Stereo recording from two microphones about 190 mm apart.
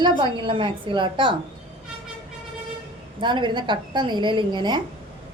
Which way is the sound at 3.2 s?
25° right (ahead or behind).